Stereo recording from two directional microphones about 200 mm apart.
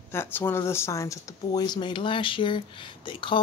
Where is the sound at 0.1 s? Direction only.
10° left (ahead or behind).